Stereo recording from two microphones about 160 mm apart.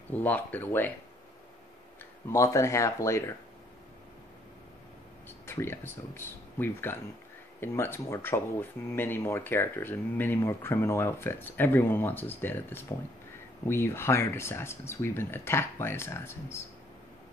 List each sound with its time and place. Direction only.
0.1 s speech: 10° left (ahead or behind)
2.2 s speech: 20° left (ahead or behind)
5.5 s speech: 15° left (ahead or behind)